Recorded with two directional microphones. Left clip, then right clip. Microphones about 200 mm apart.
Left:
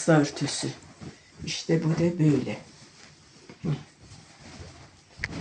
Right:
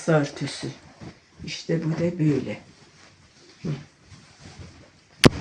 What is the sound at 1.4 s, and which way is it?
Speech, 20° left (ahead or behind).